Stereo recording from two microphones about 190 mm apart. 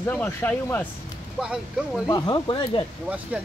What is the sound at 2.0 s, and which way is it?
Speech, 20° left (ahead or behind).